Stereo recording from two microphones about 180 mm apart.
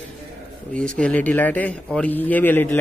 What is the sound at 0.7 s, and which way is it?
Speech, 5° left (ahead or behind).